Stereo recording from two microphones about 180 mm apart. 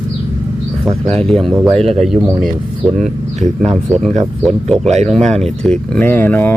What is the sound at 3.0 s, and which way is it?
Speech, 40° right (ahead or behind).